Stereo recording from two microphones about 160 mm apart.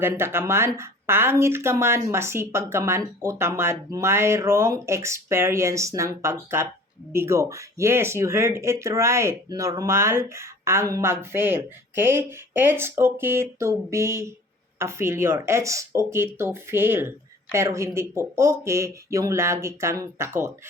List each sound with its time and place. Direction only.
0.0 s speech: 15° right (ahead or behind)